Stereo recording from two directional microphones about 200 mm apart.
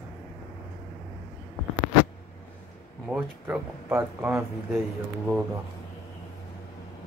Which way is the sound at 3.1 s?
10° right (ahead or behind).